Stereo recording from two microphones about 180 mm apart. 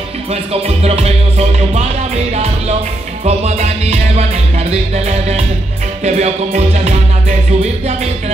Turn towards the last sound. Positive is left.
turn(degrees=-35)  # may be behind; listen again after turning